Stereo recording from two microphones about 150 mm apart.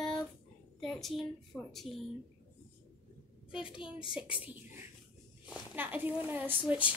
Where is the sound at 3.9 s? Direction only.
5° right (ahead or behind).